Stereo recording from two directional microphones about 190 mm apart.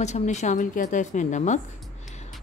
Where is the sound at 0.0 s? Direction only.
35° left (ahead or behind).